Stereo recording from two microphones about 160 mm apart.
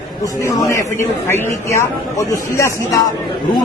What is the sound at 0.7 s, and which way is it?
A man's voice, 15° left (ahead or behind).